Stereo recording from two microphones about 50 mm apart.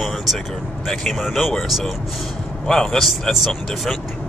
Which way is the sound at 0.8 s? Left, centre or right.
Centre.